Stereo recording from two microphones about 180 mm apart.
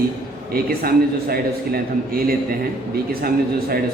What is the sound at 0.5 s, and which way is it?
A man's voice, 55° right (ahead or behind).